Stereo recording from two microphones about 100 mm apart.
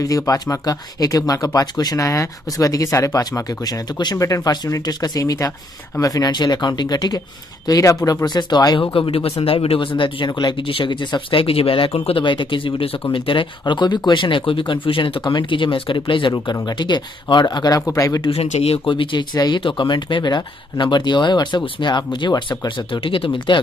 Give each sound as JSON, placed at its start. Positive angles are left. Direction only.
{"t": 0.0, "sound": "speech", "side_deg": 35}
{"t": 9.1, "sound": "speech", "side_deg": 75}
{"t": 15.2, "sound": "speech", "side_deg": 50}
{"t": 18.3, "sound": "speech", "side_deg": 85}
{"t": 18.9, "sound": "speech", "side_deg": 55}
{"t": 19.3, "sound": "speech", "side_deg": 40}